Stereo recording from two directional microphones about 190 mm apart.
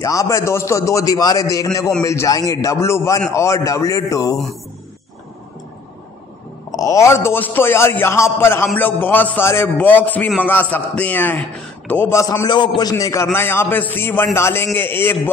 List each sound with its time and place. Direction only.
0.0 s a man's voice: 15° left (ahead or behind)
6.7 s a man's voice: 15° left (ahead or behind)